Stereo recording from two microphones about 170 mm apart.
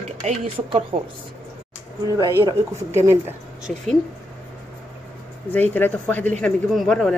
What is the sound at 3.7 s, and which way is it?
Speech, 5° left (ahead or behind).